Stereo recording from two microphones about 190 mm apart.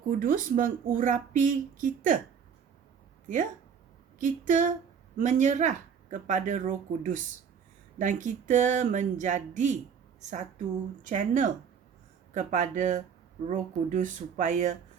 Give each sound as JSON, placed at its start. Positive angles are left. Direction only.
{"t": 0.2, "sound": "speech", "side_deg": -45}
{"t": 4.2, "sound": "speech", "side_deg": -40}